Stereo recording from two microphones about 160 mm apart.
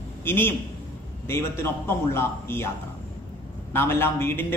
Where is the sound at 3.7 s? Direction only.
15° left (ahead or behind).